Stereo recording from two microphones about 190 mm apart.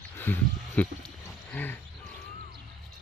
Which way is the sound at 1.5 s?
10° left (ahead or behind).